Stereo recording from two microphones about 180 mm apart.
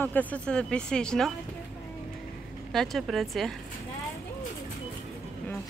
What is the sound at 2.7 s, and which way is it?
Speech, centre (ahead or behind).